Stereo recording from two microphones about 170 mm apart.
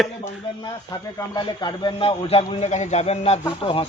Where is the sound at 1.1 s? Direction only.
25° left (ahead or behind).